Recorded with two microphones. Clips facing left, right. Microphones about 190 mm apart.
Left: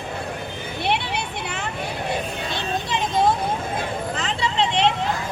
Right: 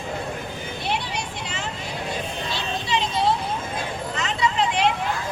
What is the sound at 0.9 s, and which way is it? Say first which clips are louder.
Vehicle: left 4 dB; 60° left (ahead or behind).